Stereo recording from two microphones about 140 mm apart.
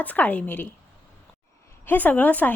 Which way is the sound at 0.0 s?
10° left (ahead or behind).